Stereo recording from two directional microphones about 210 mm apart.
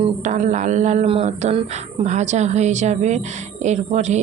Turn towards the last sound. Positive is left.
turn(degrees=-35)  # may be behind; listen again after turning